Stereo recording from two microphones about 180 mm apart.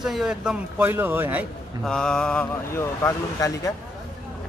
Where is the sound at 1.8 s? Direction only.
5° left (ahead or behind).